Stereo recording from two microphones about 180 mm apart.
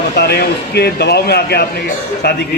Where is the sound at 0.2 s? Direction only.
60° left (ahead or behind).